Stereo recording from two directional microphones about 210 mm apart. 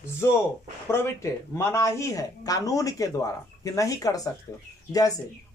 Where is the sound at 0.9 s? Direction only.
10° left (ahead or behind).